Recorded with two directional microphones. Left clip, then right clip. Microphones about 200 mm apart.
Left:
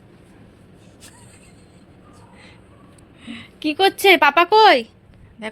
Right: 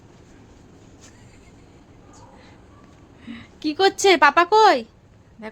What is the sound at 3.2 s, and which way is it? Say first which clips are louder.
A woman's voice: left 3 dB; 5° right (ahead or behind).